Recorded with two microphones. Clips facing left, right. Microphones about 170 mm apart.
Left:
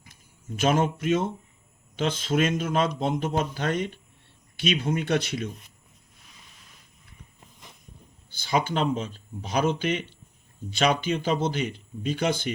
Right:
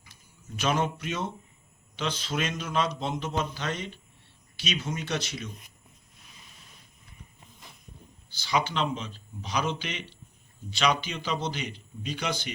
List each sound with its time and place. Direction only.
0.0 s speech: 50° left (ahead or behind)
8.4 s speech: 50° left (ahead or behind)